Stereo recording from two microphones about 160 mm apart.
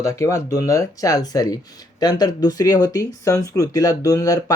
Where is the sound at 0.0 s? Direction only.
20° left (ahead or behind).